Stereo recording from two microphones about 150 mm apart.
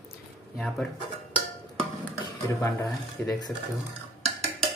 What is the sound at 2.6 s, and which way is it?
Speech, 20° left (ahead or behind).